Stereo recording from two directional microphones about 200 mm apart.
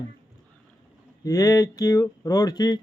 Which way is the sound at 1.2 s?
20° left (ahead or behind).